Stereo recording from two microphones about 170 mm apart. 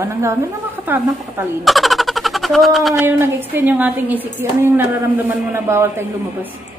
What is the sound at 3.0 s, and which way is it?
A woman's voice, 10° right (ahead or behind).